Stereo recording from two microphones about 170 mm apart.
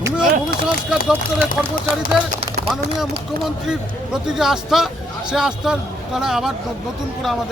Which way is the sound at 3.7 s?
5° right (ahead or behind).